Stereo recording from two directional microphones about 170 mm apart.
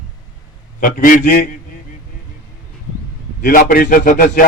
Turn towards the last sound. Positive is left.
turn(degrees=55)  # may be behind; listen again after turning